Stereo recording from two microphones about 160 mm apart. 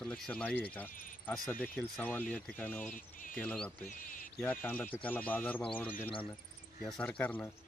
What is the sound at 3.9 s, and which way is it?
Speech, 55° left (ahead or behind).